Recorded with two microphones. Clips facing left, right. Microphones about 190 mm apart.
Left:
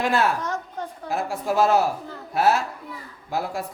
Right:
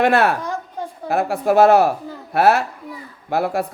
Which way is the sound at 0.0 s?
65° right (ahead or behind).